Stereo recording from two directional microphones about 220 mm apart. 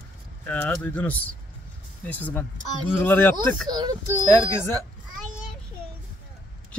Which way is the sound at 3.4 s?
20° right (ahead or behind).